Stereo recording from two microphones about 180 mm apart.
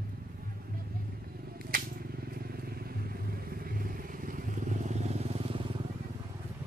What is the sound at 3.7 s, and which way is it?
Vehicle, 50° right (ahead or behind).